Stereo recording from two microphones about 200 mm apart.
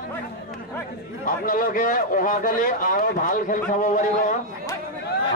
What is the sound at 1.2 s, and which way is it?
A man's voice, 45° left (ahead or behind).